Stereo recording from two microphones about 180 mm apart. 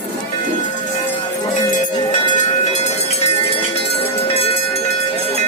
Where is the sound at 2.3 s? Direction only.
40° left (ahead or behind).